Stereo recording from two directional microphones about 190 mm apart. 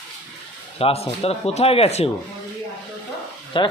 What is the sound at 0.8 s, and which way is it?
Speech, 30° left (ahead or behind).